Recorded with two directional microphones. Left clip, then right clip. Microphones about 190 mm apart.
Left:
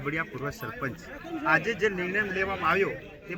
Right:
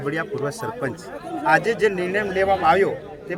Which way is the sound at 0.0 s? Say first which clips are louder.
Right 7 dB; 25° right (ahead or behind).